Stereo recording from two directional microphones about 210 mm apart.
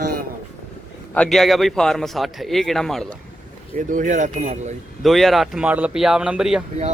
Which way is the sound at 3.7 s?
35° right (ahead or behind).